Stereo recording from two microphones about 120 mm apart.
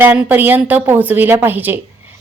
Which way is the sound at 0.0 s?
15° right (ahead or behind).